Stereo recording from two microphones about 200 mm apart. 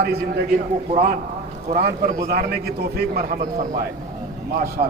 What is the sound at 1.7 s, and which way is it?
A man's voice, 50° right (ahead or behind).